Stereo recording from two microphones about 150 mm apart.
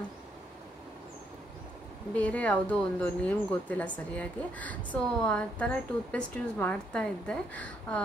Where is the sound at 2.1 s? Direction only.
10° left (ahead or behind).